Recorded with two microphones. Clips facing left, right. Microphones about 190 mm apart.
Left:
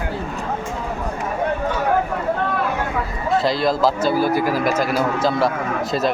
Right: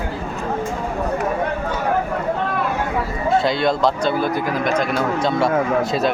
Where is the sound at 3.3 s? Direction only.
Centre (ahead or behind).